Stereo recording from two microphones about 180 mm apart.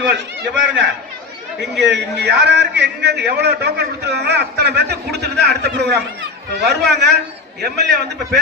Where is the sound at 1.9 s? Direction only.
75° right (ahead or behind).